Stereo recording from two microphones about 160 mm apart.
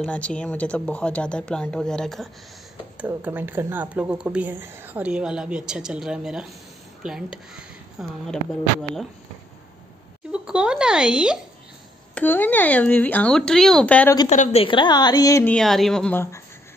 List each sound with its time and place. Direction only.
0.0 s speech: 10° left (ahead or behind)
3.0 s speech: 10° right (ahead or behind)
10.3 s speech: 5° right (ahead or behind)
12.2 s speech: 10° left (ahead or behind)
14.3 s a woman's voice: 50° left (ahead or behind)
14.6 s speech: 30° left (ahead or behind)
15.4 s speech: 5° left (ahead or behind)